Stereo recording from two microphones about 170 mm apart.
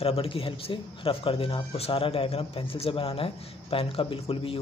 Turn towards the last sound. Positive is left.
turn(degrees=30)  # may be behind; listen again after turning